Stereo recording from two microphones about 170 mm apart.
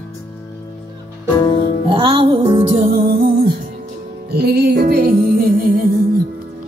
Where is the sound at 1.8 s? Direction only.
30° right (ahead or behind); by 3.1 s 45° right (ahead or behind).